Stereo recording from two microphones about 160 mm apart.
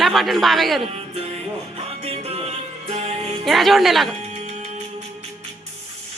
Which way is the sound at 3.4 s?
Centre (ahead or behind).